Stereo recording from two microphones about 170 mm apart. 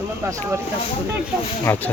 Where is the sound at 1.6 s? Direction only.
15° left (ahead or behind).